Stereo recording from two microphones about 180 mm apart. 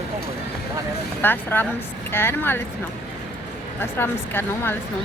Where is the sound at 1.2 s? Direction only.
10° left (ahead or behind).